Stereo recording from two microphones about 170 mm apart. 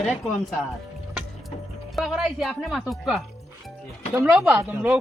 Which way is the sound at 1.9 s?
Centre (ahead or behind).